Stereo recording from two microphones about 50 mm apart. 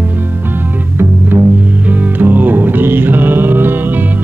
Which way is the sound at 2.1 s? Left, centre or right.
Right.